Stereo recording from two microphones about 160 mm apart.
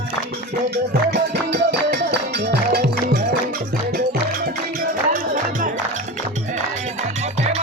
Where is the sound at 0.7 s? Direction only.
85° right.